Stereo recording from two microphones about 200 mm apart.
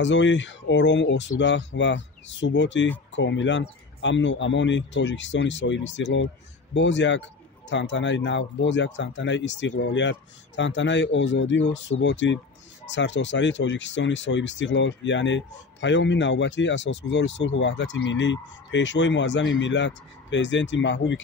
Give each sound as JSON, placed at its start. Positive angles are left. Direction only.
{"t": 0.0, "sound": "speech", "side_deg": 65}